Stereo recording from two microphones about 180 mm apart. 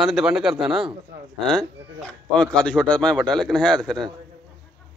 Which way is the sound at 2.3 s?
5° left (ahead or behind).